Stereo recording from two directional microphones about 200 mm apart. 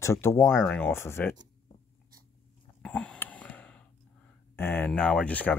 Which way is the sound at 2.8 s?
5° left (ahead or behind).